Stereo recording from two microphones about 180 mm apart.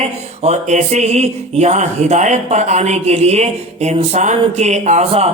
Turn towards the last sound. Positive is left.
turn(degrees=-35)  # may be behind; listen again after turning